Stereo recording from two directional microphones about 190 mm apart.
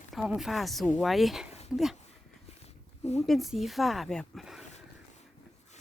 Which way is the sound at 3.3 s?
Centre (ahead or behind).